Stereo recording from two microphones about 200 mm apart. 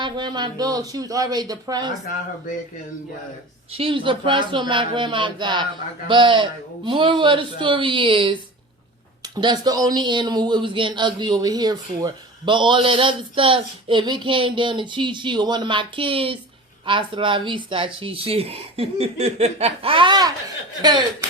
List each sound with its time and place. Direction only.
0.0 s speech: 20° right (ahead or behind)
3.7 s speech: 25° right (ahead or behind)